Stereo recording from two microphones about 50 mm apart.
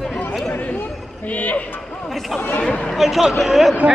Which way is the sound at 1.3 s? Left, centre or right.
Left.